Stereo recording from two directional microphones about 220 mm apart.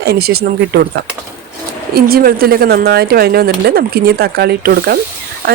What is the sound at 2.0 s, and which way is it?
Speech, 40° right (ahead or behind).